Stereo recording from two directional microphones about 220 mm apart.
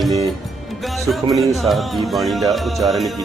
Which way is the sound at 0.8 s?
Centre (ahead or behind).